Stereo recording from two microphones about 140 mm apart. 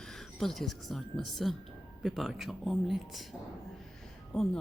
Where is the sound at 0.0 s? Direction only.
5° left (ahead or behind).